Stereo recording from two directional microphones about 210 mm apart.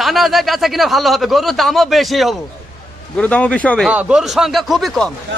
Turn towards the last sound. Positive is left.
turn(degrees=0)  # may be behind; listen again after turning